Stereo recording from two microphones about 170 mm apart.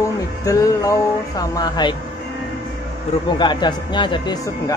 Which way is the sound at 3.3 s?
25° left (ahead or behind).